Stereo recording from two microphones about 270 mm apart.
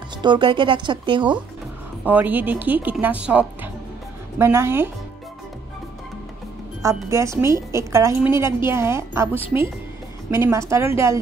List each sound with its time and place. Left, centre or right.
0.2 s a woman's voice: centre
2.0 s a woman's voice: centre
6.8 s a woman's voice: centre
10.3 s a woman's voice: centre